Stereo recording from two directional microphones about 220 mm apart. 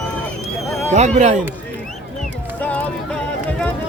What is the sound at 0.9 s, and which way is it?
Speech, 30° right (ahead or behind).